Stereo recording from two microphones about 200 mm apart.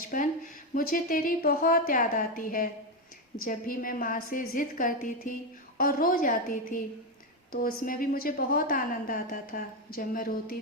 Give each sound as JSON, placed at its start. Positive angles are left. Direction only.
{"t": 0.1, "sound": "a woman's voice", "side_deg": 45}